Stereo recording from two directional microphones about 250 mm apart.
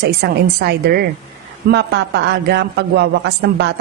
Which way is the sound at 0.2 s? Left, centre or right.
Right.